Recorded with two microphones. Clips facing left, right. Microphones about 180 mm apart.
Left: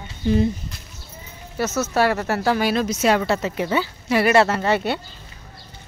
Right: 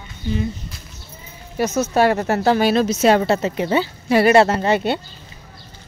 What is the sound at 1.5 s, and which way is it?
Speech, 15° right (ahead or behind).